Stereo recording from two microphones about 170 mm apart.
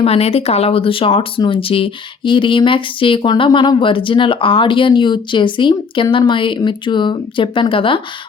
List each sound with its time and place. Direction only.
0.0 s speech: 35° left (ahead or behind)